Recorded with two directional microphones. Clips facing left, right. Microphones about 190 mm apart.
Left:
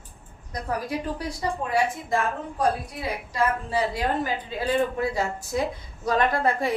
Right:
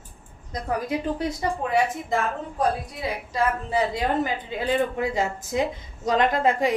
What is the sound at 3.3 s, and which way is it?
A woman's voice, 20° right (ahead or behind).